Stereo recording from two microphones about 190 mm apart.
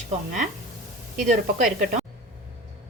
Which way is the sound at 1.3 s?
40° right (ahead or behind).